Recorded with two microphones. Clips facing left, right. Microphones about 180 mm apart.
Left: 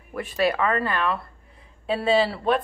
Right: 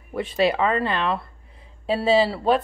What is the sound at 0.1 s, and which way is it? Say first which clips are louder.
A woman's voice: right 2 dB; 25° right (ahead or behind).